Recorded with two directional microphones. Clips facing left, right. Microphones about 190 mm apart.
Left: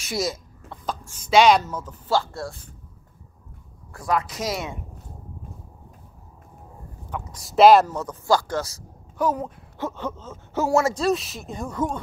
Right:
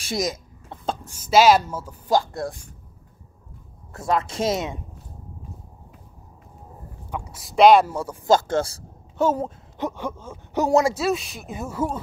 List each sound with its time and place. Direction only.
0.2 s cough: 15° right (ahead or behind)
1.2 s speech: 5° right (ahead or behind)
3.9 s speech: 25° right (ahead or behind)
7.1 s a sound: 10° right (ahead or behind)
7.3 s speech: centre (ahead or behind)
7.8 s speech: 10° right (ahead or behind)
8.3 s speech: 25° right (ahead or behind)
11.0 s speech: centre (ahead or behind)